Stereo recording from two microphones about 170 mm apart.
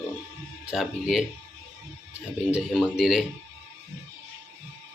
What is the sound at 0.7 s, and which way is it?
Speech, centre (ahead or behind).